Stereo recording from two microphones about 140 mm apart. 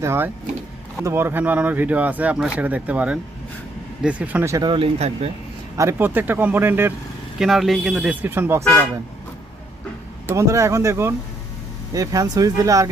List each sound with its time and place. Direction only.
0.0 s speech: 15° right (ahead or behind)
4.6 s speech: 35° right (ahead or behind)
4.9 s speech: 50° right (ahead or behind)
5.7 s speech: 20° right (ahead or behind)
7.3 s speech: centre (ahead or behind)
8.2 s speech: 15° right (ahead or behind)
10.2 s speech: 20° right (ahead or behind)